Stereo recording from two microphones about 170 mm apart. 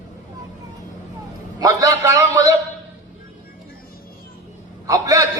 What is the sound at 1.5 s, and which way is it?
Speech, 20° right (ahead or behind).